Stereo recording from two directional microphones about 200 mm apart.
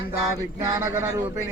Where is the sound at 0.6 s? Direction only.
10° right (ahead or behind).